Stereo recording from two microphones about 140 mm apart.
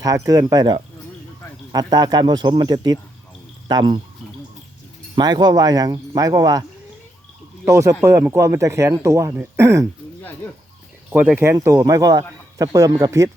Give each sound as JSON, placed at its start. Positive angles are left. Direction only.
{"t": 0.0, "sound": "a man's voice", "side_deg": -25}
{"t": 5.1, "sound": "a man's voice", "side_deg": -30}
{"t": 11.1, "sound": "a man's voice", "side_deg": -10}